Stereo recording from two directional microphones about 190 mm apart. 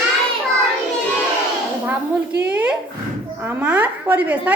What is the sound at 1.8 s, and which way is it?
A woman's voice, 5° right (ahead or behind).